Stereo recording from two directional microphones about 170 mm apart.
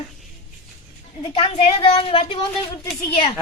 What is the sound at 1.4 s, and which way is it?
A woman's voice, 30° left (ahead or behind).